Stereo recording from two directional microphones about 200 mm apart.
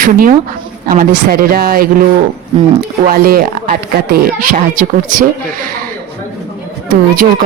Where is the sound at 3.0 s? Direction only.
45° right (ahead or behind).